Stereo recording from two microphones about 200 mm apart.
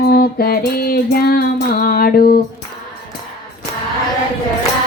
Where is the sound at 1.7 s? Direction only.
50° left (ahead or behind).